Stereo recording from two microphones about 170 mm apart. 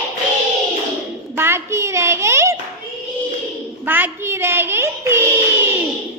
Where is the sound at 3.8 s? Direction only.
10° right (ahead or behind).